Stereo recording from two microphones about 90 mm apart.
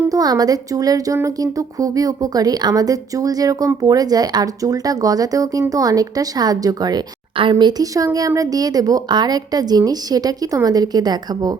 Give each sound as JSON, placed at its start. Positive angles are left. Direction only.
{"t": 0.1, "sound": "a woman's voice", "side_deg": -45}
{"t": 7.3, "sound": "speech", "side_deg": -65}
{"t": 7.7, "sound": "speech", "side_deg": -40}